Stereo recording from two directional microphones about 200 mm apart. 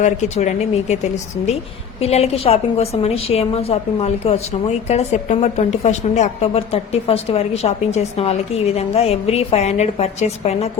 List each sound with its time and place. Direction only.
0.0 s a woman's voice: 35° left (ahead or behind)